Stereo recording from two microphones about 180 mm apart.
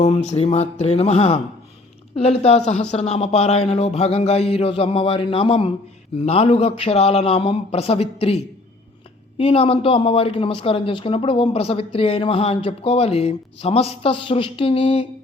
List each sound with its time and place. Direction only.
0.0 s speech: 35° left (ahead or behind)
9.4 s speech: 30° left (ahead or behind)